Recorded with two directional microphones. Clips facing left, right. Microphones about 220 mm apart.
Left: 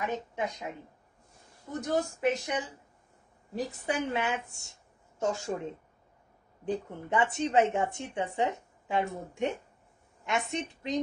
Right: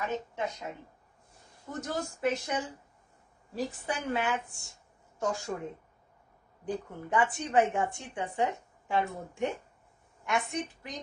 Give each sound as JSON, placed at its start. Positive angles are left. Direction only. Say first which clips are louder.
{"t": 0.0, "sound": "speech", "louder": "left 1 dB", "side_deg": 15}
{"t": 1.7, "sound": "a woman's voice", "louder": "left 5 dB", "side_deg": 15}
{"t": 6.7, "sound": "a woman's voice", "louder": "left 2 dB", "side_deg": 25}